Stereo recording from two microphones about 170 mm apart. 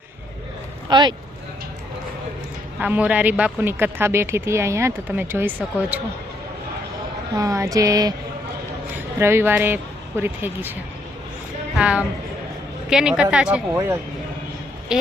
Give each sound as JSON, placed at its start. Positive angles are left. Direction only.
{"t": 0.9, "sound": "speech", "side_deg": -25}
{"t": 2.7, "sound": "speech", "side_deg": -10}
{"t": 7.3, "sound": "a sound", "side_deg": -20}
{"t": 9.1, "sound": "speech", "side_deg": -15}
{"t": 11.8, "sound": "a woman's voice", "side_deg": -5}